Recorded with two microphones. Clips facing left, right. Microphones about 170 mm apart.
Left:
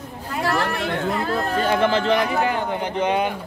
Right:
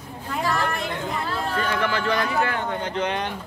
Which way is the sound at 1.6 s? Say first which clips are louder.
Left 6 dB; 25° left (ahead or behind).